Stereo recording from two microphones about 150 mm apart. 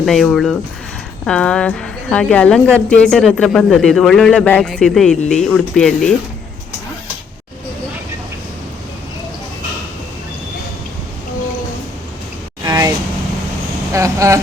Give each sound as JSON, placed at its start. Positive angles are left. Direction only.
{"t": 0.0, "sound": "a woman's voice", "side_deg": 0}
{"t": 12.6, "sound": "vehicle", "side_deg": -25}
{"t": 13.9, "sound": "vehicle", "side_deg": -20}